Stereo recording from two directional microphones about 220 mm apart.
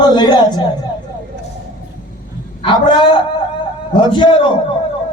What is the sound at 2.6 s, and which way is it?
A man's voice, 20° left (ahead or behind).